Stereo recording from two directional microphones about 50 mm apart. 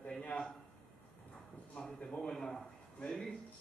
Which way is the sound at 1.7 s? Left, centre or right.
Centre.